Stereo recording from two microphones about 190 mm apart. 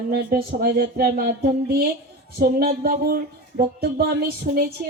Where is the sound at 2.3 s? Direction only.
55° right (ahead or behind).